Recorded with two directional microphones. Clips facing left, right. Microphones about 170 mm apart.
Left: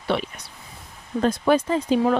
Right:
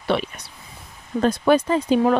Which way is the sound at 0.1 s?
65° right (ahead or behind).